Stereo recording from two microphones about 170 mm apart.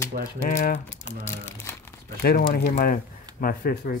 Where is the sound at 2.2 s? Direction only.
65° left (ahead or behind).